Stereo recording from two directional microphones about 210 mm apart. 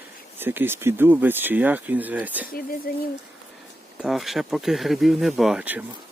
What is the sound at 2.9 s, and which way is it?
Speech, 45° left (ahead or behind).